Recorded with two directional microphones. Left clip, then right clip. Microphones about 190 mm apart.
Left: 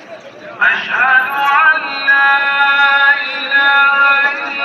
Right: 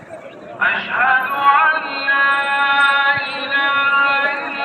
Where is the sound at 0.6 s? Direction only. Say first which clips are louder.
Left 5 dB; 70° right (ahead or behind).